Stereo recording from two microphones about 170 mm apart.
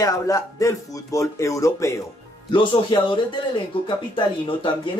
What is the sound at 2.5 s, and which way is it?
Speech, 30° left (ahead or behind).